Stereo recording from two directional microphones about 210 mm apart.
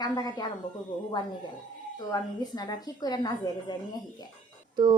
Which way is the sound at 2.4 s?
20° left (ahead or behind).